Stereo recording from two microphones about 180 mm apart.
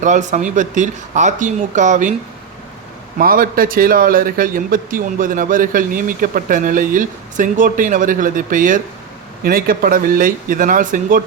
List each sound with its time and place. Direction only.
0.0 s a man's voice: 40° right (ahead or behind)
3.2 s a man's voice: 55° right (ahead or behind)